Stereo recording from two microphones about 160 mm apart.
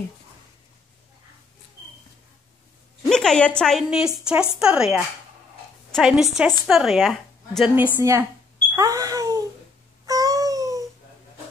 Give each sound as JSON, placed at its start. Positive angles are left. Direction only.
{"t": 3.1, "sound": "a woman's voice", "side_deg": 5}
{"t": 7.7, "sound": "a woman's voice", "side_deg": -15}
{"t": 8.7, "sound": "wail", "side_deg": -20}
{"t": 10.0, "sound": "a sound", "side_deg": -20}